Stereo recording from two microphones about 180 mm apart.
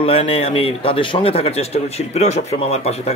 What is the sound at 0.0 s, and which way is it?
Speech, 35° left (ahead or behind).